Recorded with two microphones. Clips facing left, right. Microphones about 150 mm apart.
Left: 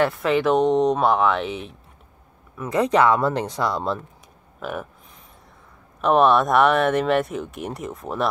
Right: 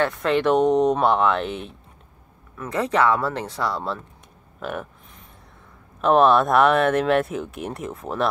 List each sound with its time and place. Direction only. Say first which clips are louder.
0.0 s speech: left 1 dB; 5° left (ahead or behind)
2.5 s speech: left 3 dB; 10° left (ahead or behind)
4.6 s speech: even; centre (ahead or behind)
5.9 s speech: right 1 dB; centre (ahead or behind)